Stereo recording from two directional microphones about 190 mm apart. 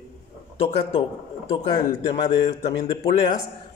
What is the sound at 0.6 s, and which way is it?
Speech, 30° left (ahead or behind).